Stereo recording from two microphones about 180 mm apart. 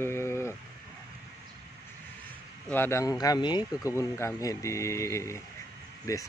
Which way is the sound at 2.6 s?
10° left (ahead or behind).